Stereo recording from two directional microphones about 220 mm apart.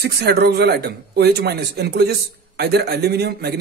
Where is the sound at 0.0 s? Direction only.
50° right (ahead or behind).